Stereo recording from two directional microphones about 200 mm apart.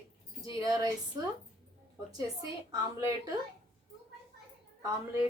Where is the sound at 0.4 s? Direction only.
20° right (ahead or behind).